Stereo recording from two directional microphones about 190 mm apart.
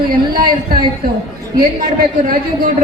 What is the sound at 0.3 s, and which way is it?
Speech, 50° right (ahead or behind).